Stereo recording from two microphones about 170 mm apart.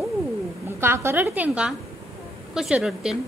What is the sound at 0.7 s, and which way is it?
A woman's voice, 15° right (ahead or behind).